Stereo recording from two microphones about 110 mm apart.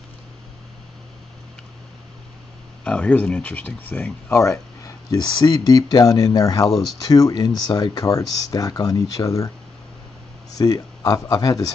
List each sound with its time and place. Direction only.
2.8 s speech: 10° left (ahead or behind)
4.4 s a sound: 25° left (ahead or behind)
5.4 s speech: 35° left (ahead or behind)
6.7 s speech: centre (ahead or behind)
7.0 s speech: 30° left (ahead or behind)
10.5 s a sound: 30° left (ahead or behind)
11.2 s speech: 30° left (ahead or behind)